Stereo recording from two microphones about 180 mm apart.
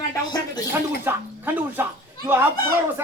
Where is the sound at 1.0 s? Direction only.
10° right (ahead or behind).